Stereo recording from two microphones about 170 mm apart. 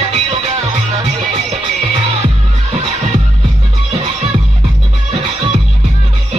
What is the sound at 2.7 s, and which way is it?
Music, 40° right (ahead or behind).